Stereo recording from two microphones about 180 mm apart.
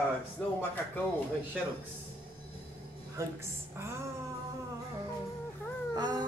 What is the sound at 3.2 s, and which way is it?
Speech, 15° right (ahead or behind).